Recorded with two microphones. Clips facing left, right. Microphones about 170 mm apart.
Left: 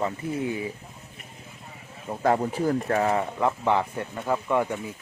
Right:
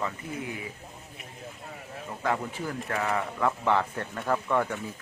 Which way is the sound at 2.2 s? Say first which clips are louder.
Left 7 dB; 40° left (ahead or behind).